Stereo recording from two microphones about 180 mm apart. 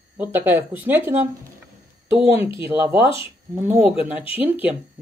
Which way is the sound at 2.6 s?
10° right (ahead or behind).